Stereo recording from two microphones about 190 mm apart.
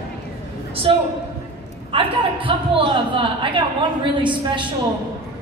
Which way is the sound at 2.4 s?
25° right (ahead or behind).